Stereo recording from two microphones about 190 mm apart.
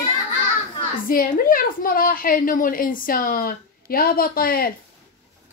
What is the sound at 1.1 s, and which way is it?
A woman's voice, 50° left (ahead or behind).